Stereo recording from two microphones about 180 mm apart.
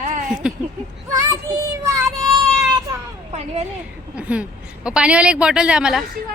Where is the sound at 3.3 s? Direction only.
35° right (ahead or behind).